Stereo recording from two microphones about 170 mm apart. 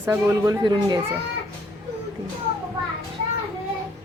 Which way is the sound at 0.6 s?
25° right (ahead or behind).